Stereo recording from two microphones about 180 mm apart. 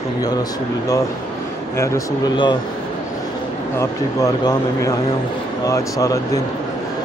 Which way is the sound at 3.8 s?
20° left (ahead or behind).